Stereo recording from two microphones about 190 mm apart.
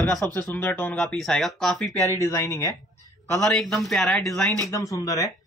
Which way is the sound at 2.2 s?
15° left (ahead or behind).